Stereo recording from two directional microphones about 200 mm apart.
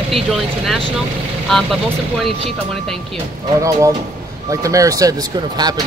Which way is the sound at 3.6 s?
15° right (ahead or behind).